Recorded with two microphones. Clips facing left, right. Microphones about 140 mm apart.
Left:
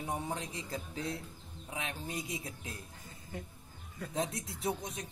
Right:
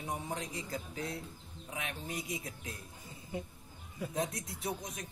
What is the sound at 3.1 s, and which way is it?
Music, 15° right (ahead or behind).